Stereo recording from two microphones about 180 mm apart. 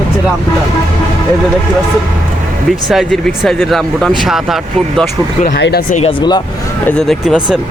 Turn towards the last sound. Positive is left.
turn(degrees=-5)  # may be behind; listen again after turning